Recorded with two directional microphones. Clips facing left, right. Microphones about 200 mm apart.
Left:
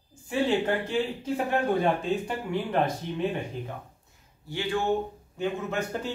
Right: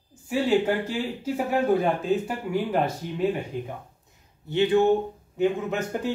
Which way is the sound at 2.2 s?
5° right (ahead or behind).